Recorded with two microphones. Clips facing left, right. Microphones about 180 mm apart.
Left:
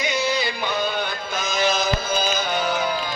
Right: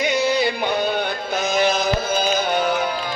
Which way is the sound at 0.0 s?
60° right (ahead or behind).